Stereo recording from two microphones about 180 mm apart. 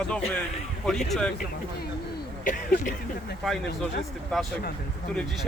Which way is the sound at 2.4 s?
45° left (ahead or behind).